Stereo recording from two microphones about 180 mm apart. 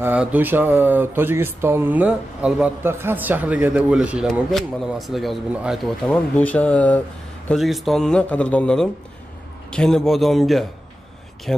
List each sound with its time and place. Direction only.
0.0 s speech: 10° right (ahead or behind)